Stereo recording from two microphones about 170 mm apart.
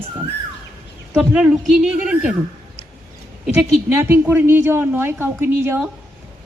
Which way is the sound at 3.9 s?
10° right (ahead or behind).